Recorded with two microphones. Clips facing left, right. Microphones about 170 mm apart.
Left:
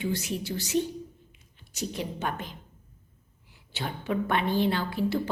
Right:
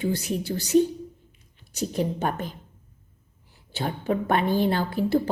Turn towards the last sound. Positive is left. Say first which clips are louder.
# right 5 dB
turn(degrees=-45)  # may be behind; listen again after turning